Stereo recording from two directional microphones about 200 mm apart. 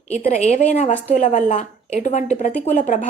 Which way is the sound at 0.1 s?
35° left (ahead or behind).